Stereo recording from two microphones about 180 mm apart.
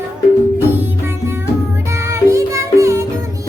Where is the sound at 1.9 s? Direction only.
15° right (ahead or behind).